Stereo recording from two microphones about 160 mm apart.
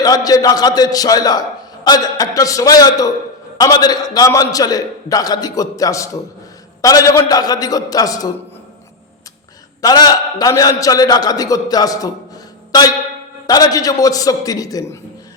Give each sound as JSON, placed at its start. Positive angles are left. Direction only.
{"t": 0.0, "sound": "a man's voice", "side_deg": 25}
{"t": 9.8, "sound": "a man's voice", "side_deg": 25}